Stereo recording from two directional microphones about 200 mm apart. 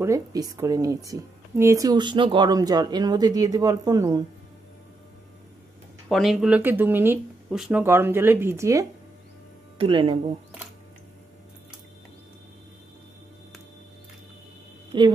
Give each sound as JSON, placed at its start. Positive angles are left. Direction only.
{"t": 0.0, "sound": "speech", "side_deg": -15}
{"t": 6.0, "sound": "speech", "side_deg": 0}
{"t": 9.8, "sound": "speech", "side_deg": -25}
{"t": 14.9, "sound": "a woman's voice", "side_deg": -25}